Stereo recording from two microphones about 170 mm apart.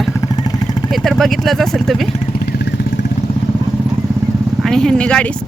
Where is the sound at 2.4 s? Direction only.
75° left (ahead or behind).